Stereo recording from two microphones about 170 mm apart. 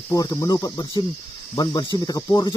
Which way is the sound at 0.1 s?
20° left (ahead or behind).